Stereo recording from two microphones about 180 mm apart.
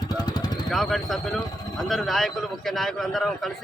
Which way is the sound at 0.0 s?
20° left (ahead or behind).